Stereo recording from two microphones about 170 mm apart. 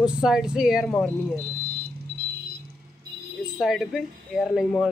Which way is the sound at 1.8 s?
65° right (ahead or behind).